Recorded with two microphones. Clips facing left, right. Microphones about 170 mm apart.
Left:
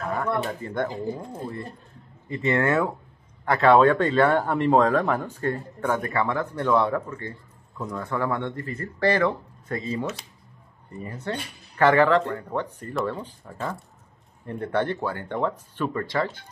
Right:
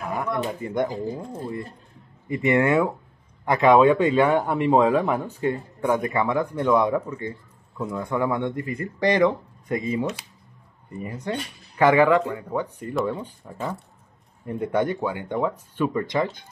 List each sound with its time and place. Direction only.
0.0 s speech: 15° right (ahead or behind)
1.2 s speech: centre (ahead or behind)
2.2 s speech: 15° right (ahead or behind)
11.0 s speech: 10° right (ahead or behind)